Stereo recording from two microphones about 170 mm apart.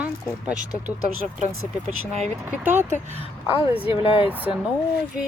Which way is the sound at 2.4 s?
10° right (ahead or behind).